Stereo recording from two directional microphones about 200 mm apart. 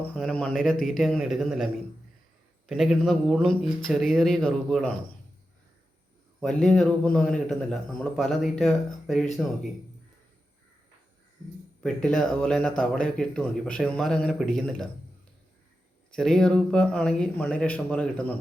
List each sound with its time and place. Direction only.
0.1 s a man's voice: 5° left (ahead or behind)
6.4 s a man's voice: 5° left (ahead or behind)
11.8 s a man's voice: 5° left (ahead or behind)
16.1 s a man's voice: 5° left (ahead or behind)